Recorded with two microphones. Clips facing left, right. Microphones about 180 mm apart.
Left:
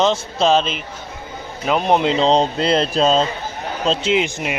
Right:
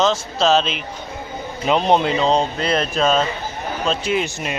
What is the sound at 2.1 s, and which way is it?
Speech, 30° left (ahead or behind).